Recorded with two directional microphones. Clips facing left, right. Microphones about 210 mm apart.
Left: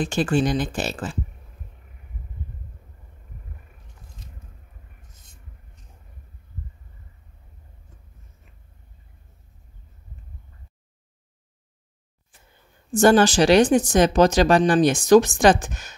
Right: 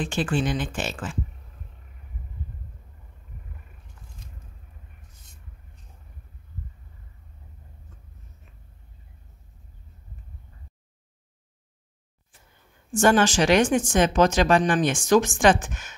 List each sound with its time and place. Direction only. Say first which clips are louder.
0.0 s speech: left 4 dB; 40° left (ahead or behind)
12.9 s speech: left 4 dB; 35° left (ahead or behind)